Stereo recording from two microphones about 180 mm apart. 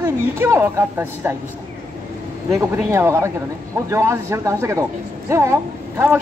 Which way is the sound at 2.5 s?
15° right (ahead or behind).